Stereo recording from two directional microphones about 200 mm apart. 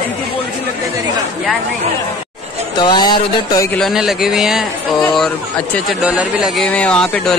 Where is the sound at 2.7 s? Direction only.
20° left (ahead or behind).